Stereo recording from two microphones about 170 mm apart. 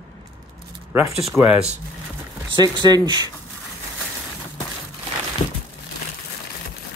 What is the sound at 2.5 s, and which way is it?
Speech, 25° right (ahead or behind).